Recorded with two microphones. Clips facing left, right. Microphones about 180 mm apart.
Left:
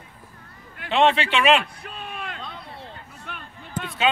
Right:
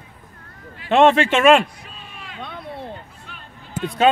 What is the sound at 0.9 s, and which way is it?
Speech, 45° right (ahead or behind).